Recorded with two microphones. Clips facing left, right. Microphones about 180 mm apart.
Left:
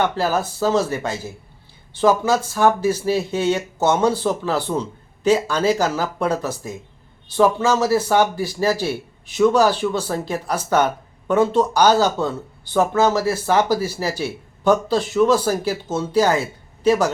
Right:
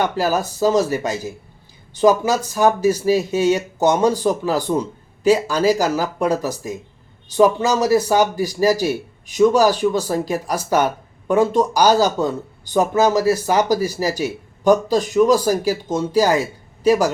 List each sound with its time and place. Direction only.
0.0 s speech: 10° right (ahead or behind)